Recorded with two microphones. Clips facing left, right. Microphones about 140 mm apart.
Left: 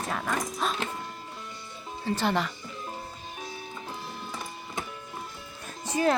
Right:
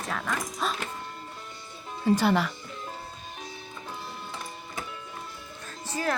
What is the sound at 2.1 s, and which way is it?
Speech, 10° right (ahead or behind).